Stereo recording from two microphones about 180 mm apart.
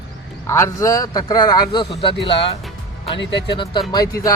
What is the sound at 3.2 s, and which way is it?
Speech, 75° left (ahead or behind).